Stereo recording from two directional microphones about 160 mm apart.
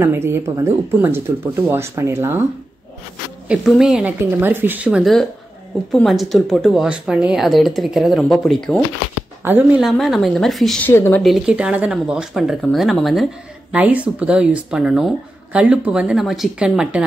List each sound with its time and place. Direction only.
0.0 s speech: 15° right (ahead or behind)
3.4 s speech: centre (ahead or behind)
9.4 s speech: 10° right (ahead or behind)
10.9 s speech: 15° left (ahead or behind)
11.2 s speech: 5° right (ahead or behind)